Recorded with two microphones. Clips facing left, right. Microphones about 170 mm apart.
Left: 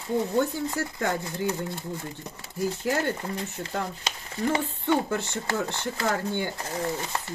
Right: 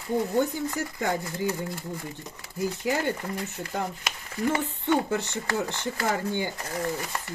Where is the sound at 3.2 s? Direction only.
20° left (ahead or behind).